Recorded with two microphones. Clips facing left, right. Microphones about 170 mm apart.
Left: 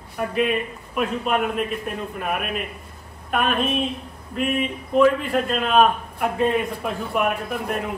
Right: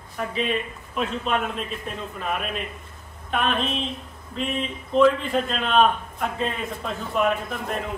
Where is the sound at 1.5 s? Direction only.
60° left (ahead or behind).